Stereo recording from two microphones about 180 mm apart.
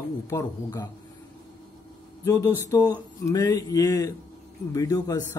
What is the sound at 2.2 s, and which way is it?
Speech, 20° left (ahead or behind).